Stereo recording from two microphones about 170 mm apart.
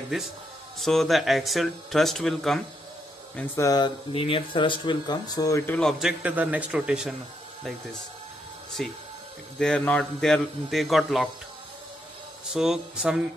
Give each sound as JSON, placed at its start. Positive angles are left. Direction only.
{"t": 0.7, "sound": "speech", "side_deg": 0}
{"t": 3.3, "sound": "speech", "side_deg": 15}
{"t": 4.1, "sound": "speech", "side_deg": 30}
{"t": 8.8, "sound": "speech", "side_deg": 5}
{"t": 12.5, "sound": "speech", "side_deg": -5}